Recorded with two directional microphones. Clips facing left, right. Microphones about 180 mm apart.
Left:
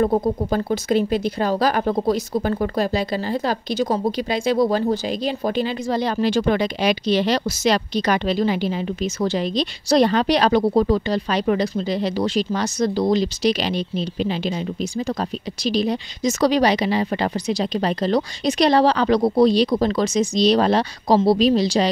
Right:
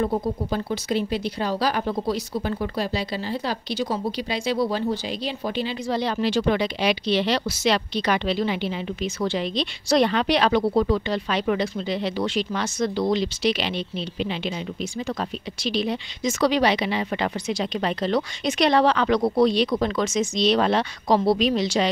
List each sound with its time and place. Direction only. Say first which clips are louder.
0.0 s speech: left 5 dB; 50° left (ahead or behind)